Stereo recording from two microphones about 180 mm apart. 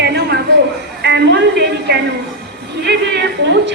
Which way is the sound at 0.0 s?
65° right (ahead or behind).